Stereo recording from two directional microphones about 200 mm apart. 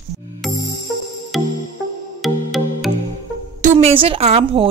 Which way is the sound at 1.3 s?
Centre (ahead or behind).